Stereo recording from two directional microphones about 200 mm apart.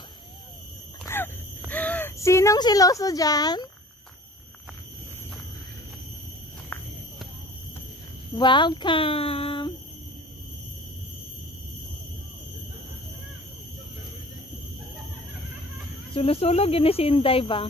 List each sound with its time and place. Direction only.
1.0 s groan: 10° left (ahead or behind)
1.7 s speech: 10° left (ahead or behind)
6.7 s a sound: 10° left (ahead or behind)
8.4 s speech: 25° left (ahead or behind)
16.1 s speech: 30° left (ahead or behind)